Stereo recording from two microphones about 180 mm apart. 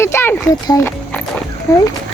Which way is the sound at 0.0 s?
15° left (ahead or behind).